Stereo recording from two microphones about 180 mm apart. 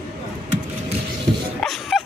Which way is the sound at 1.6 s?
Centre (ahead or behind).